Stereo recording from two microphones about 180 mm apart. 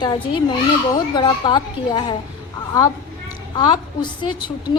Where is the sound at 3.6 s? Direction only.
25° left (ahead or behind).